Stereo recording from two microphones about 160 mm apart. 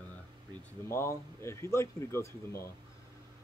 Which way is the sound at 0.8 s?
15° left (ahead or behind).